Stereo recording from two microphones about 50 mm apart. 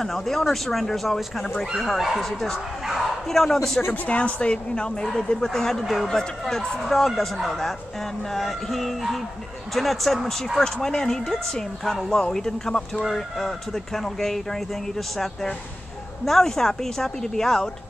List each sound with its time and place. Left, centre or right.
0.0 s speech: centre
3.9 s speech: left; by 10.6 s centre
10.6 s speech: centre